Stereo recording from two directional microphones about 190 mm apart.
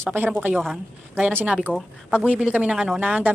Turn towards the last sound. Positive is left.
turn(degrees=-5)  # may be behind; listen again after turning